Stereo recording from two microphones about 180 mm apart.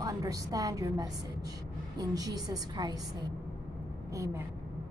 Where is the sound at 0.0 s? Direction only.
20° right (ahead or behind).